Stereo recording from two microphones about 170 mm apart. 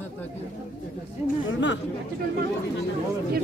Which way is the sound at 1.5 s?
90° left.